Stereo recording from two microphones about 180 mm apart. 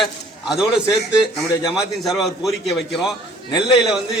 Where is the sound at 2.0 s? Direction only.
Centre (ahead or behind).